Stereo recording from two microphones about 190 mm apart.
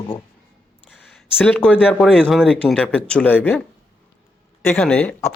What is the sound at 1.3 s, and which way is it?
Speech, 5° left (ahead or behind).